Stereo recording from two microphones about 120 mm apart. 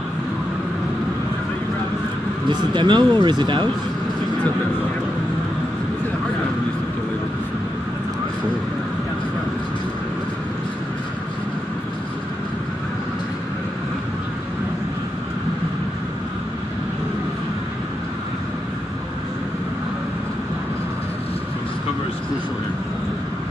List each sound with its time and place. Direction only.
2.7 s speech: 40° right (ahead or behind)